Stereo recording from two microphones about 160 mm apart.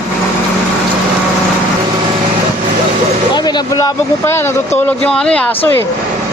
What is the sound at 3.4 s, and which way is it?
Speech, 25° left (ahead or behind).